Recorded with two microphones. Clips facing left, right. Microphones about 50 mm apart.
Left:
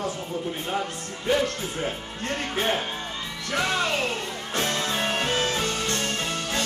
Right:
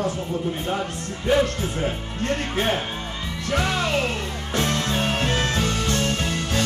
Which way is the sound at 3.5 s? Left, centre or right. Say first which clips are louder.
Right 2 dB; centre.